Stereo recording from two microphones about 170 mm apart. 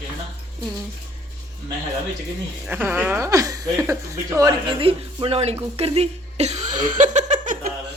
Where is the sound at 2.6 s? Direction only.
10° right (ahead or behind).